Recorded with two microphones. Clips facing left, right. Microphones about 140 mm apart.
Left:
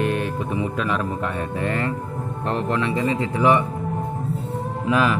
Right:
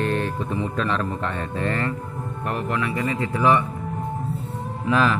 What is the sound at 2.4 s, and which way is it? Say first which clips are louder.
Speech: left 3 dB; 30° left (ahead or behind).